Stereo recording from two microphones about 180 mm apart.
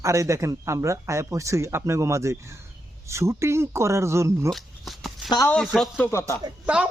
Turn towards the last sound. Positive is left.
turn(degrees=-5)  # may be behind; listen again after turning